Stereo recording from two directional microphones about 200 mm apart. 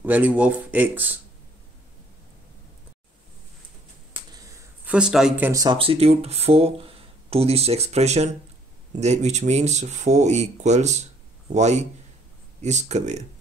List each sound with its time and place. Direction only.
0.0 s speech: 10° right (ahead or behind)
4.1 s a sound: 15° right (ahead or behind)
4.9 s speech: 5° right (ahead or behind)
5.5 s speech: 15° right (ahead or behind)
5.8 s speech: 30° right (ahead or behind)